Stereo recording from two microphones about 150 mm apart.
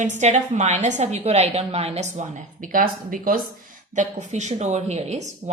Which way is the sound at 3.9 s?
50° right (ahead or behind).